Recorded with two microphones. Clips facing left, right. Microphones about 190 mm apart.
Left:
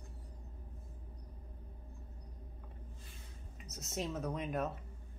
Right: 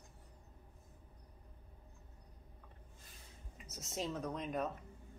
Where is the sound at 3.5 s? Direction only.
Centre (ahead or behind).